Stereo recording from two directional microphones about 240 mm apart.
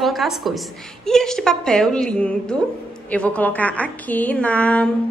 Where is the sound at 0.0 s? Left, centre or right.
Centre.